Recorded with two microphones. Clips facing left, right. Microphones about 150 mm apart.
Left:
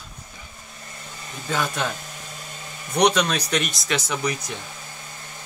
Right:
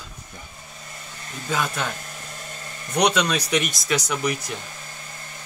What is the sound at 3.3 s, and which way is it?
Speech, 5° right (ahead or behind).